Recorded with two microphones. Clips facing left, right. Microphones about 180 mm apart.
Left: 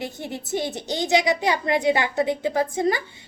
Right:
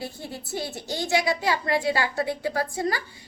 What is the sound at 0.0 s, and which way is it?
A woman's voice, 20° left (ahead or behind).